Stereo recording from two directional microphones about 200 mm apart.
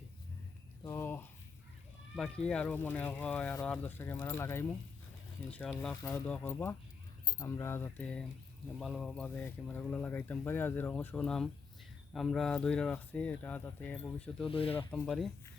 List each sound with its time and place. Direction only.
0.9 s a sound: 10° left (ahead or behind)
2.1 s speech: 5° left (ahead or behind)
14.5 s speech: 30° left (ahead or behind)
14.8 s speech: 10° left (ahead or behind)